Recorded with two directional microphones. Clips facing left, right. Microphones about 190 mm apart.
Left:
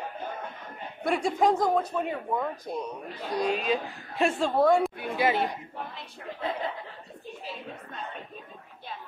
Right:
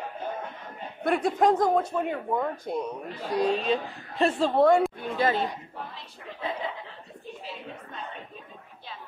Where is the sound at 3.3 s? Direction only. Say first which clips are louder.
Right 2 dB; 30° right (ahead or behind).